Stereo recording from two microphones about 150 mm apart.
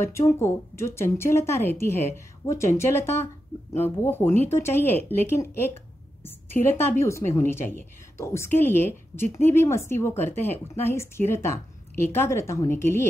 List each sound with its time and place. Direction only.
0.0 s a woman's voice: 20° left (ahead or behind)